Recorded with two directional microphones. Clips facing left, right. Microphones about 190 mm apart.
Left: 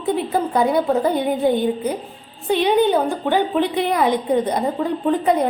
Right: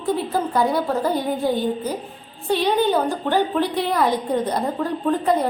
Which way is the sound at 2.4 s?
15° left (ahead or behind).